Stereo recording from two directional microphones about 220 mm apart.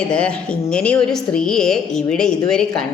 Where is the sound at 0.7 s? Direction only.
5° left (ahead or behind).